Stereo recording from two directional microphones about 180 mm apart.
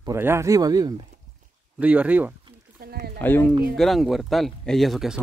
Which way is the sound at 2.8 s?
60° right (ahead or behind).